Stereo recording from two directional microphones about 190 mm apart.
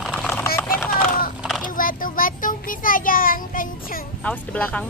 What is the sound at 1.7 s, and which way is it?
A child's voice, 45° left (ahead or behind).